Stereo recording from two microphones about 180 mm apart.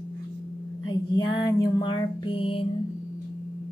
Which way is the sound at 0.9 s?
25° left (ahead or behind).